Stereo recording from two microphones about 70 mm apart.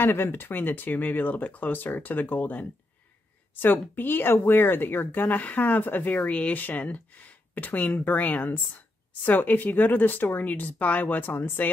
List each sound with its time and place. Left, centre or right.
0.0 s speech: left